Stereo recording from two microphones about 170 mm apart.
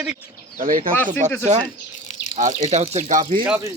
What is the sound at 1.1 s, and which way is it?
Speech, 45° right (ahead or behind).